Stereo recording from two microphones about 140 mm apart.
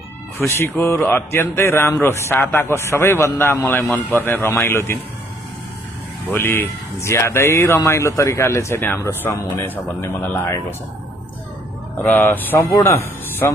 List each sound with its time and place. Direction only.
0.4 s speech: 20° left (ahead or behind)
6.3 s speech: 15° left (ahead or behind)
12.0 s a man's voice: 15° left (ahead or behind)